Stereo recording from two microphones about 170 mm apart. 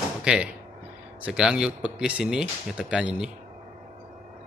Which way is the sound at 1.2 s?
5° right (ahead or behind).